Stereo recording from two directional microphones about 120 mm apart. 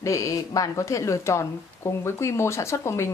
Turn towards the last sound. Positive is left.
turn(degrees=25)  # may be behind; listen again after turning